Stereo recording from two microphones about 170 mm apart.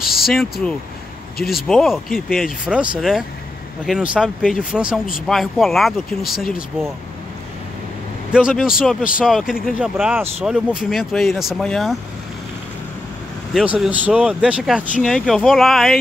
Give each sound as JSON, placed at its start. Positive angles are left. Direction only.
{"t": 0.0, "sound": "speech", "side_deg": 0}
{"t": 8.3, "sound": "speech", "side_deg": -5}
{"t": 13.5, "sound": "speech", "side_deg": 0}